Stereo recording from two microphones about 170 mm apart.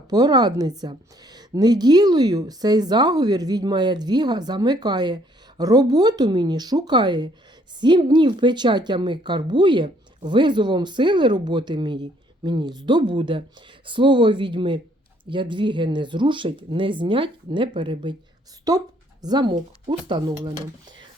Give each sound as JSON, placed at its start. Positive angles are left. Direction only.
{"t": 0.1, "sound": "speech", "side_deg": -25}